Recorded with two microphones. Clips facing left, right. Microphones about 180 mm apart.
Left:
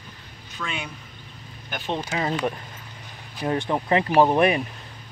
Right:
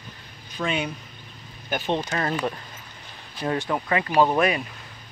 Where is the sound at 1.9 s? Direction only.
10° left (ahead or behind).